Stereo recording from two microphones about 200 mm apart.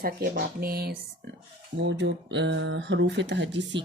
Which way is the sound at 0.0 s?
50° right (ahead or behind).